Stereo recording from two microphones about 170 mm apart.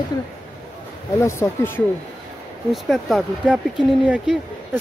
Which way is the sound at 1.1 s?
15° left (ahead or behind).